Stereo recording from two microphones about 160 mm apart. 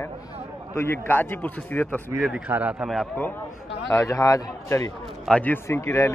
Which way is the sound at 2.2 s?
5° right (ahead or behind).